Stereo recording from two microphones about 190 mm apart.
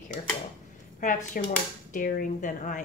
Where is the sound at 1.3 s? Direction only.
45° left (ahead or behind).